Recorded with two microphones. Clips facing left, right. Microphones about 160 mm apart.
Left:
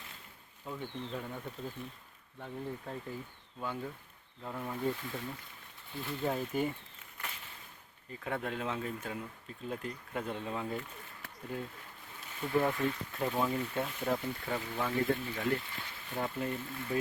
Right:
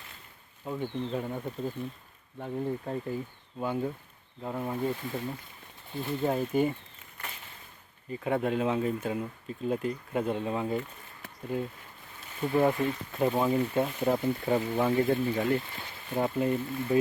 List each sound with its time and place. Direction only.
0.8 s speech: 25° right (ahead or behind)
4.4 s speech: 25° right (ahead or behind)
6.5 s speech: 15° right (ahead or behind)
8.1 s speech: 15° right (ahead or behind)
12.4 s speech: 25° right (ahead or behind)
16.4 s speech: 15° right (ahead or behind)